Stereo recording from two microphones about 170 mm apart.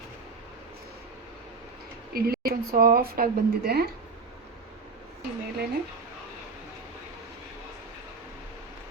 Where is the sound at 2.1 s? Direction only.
65° right (ahead or behind).